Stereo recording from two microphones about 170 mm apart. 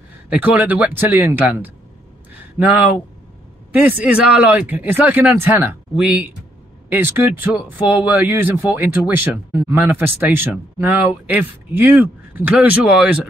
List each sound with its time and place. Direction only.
0.3 s speech: 10° right (ahead or behind)
3.7 s speech: 10° right (ahead or behind)